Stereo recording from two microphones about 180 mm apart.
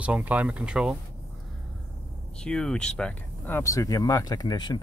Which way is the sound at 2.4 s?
5° left (ahead or behind).